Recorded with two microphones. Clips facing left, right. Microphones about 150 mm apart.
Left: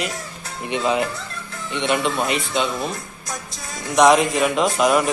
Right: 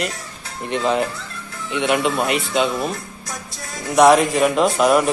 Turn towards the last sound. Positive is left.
turn(degrees=0)  # may be behind; listen again after turning